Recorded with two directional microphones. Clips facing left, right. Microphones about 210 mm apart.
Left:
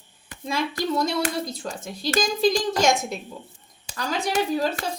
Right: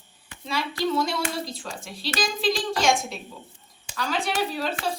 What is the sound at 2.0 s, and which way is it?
Speech, 45° left (ahead or behind).